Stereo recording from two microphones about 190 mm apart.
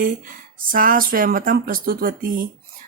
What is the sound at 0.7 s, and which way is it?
Speech, 45° right (ahead or behind).